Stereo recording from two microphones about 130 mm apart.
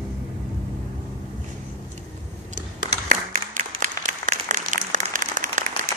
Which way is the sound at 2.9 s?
75° right (ahead or behind).